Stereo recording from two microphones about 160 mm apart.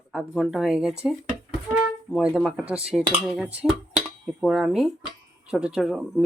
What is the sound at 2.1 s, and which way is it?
Speech, 5° right (ahead or behind).